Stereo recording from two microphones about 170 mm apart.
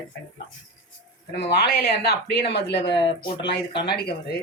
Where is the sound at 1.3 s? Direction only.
70° left (ahead or behind).